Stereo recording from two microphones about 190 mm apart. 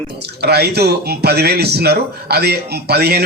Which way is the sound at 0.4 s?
60° right (ahead or behind).